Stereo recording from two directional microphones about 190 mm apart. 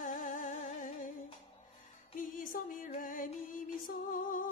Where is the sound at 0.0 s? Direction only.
45° left (ahead or behind).